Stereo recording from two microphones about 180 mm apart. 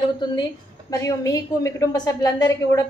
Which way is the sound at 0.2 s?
20° left (ahead or behind).